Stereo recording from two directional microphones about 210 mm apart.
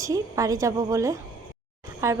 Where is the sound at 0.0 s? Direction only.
15° right (ahead or behind).